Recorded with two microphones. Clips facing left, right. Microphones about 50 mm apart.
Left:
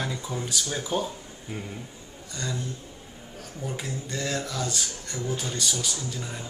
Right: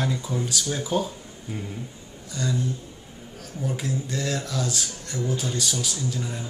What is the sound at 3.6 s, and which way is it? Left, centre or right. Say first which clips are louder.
A man's voice: right 5 dB; centre.